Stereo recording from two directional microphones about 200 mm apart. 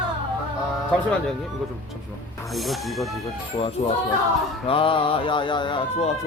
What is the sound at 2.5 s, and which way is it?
Speech, centre (ahead or behind).